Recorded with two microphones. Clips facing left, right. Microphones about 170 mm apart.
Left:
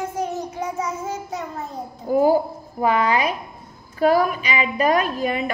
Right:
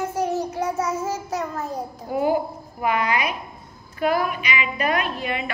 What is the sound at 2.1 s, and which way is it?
A woman's voice, 35° left (ahead or behind).